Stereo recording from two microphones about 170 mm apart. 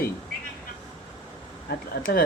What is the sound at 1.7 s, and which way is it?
Speech, 60° left (ahead or behind).